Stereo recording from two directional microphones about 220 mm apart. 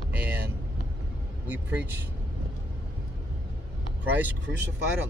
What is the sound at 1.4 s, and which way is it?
Speech, 5° right (ahead or behind).